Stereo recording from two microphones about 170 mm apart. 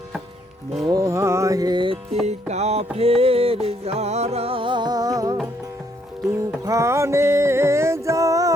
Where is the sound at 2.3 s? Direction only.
40° right (ahead or behind); by 5.3 s 20° right (ahead or behind).